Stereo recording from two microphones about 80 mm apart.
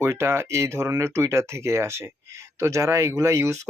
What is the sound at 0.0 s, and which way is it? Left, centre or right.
Speech, right.